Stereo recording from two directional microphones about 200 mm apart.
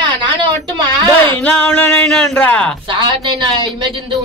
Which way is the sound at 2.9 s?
25° right (ahead or behind).